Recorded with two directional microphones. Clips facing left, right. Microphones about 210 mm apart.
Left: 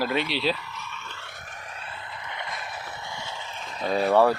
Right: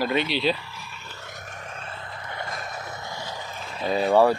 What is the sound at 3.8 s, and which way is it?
Speech, centre (ahead or behind).